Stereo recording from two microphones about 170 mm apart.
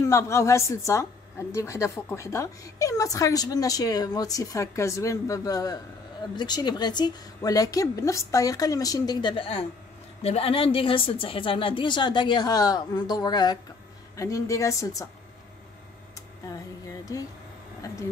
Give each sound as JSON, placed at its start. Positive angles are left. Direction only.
{"t": 0.0, "sound": "a woman's voice", "side_deg": 15}
{"t": 16.4, "sound": "music", "side_deg": 20}